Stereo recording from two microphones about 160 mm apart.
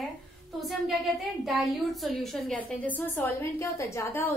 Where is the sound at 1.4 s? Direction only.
Centre (ahead or behind).